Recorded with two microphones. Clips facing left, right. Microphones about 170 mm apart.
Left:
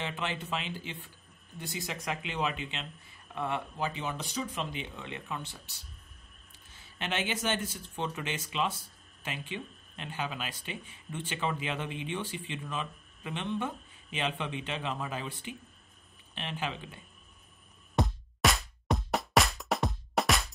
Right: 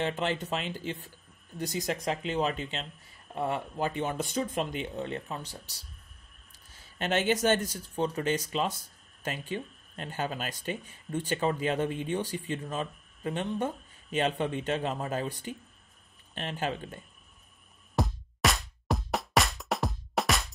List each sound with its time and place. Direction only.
0.0 s speech: 45° right (ahead or behind)
7.0 s speech: 45° right (ahead or behind)
17.9 s music: centre (ahead or behind)